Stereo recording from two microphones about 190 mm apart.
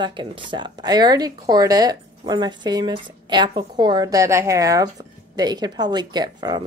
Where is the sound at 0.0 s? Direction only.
25° right (ahead or behind).